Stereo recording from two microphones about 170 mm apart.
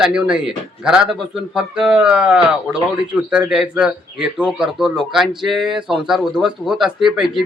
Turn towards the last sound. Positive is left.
turn(degrees=-5)  # may be behind; listen again after turning